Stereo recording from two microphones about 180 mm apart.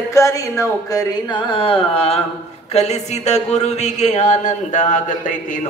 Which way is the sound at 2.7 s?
35° left (ahead or behind).